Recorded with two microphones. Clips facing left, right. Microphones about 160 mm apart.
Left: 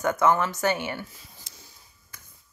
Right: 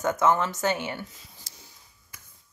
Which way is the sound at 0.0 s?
20° right (ahead or behind).